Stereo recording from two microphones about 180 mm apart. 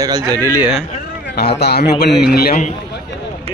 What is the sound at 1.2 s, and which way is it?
A man's voice, 65° left (ahead or behind).